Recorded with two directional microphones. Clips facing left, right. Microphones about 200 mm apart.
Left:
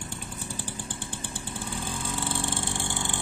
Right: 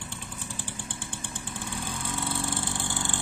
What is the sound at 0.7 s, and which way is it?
Chainsaw, 40° left (ahead or behind).